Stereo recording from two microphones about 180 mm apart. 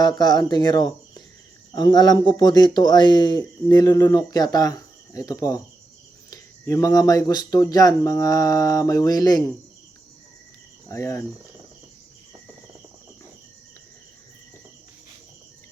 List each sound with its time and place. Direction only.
0.0 s speech: 25° left (ahead or behind)
10.8 s cricket: 15° left (ahead or behind)